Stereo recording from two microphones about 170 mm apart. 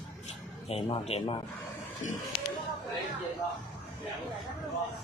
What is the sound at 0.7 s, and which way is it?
Speech, 35° left (ahead or behind).